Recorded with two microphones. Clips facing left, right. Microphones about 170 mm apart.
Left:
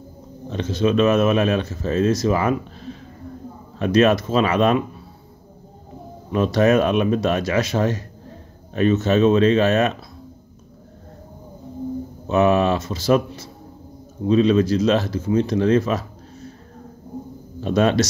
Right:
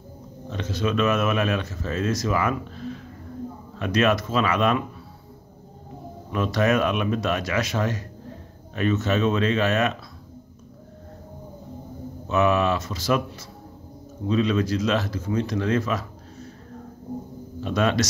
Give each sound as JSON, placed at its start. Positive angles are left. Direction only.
{"t": 0.5, "sound": "speech", "side_deg": 25}
{"t": 6.3, "sound": "speech", "side_deg": 30}
{"t": 12.3, "sound": "speech", "side_deg": 30}
{"t": 17.6, "sound": "speech", "side_deg": 30}